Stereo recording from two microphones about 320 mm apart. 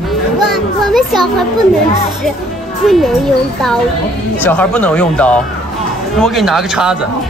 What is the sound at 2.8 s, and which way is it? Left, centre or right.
Speech, centre.